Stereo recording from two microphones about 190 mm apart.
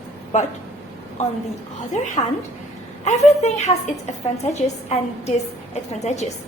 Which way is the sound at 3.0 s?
35° left (ahead or behind).